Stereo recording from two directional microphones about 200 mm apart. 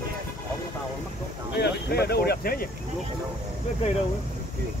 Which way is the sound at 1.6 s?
55° left (ahead or behind).